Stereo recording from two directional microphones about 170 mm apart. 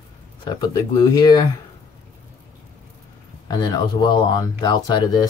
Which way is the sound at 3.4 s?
25° left (ahead or behind).